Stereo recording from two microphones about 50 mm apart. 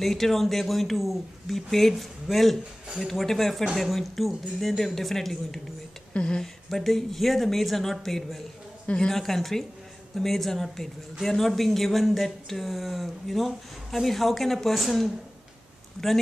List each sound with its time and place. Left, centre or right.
0.0 s speech: centre
6.1 s speech: centre
6.4 s speech: centre
8.8 s speech: centre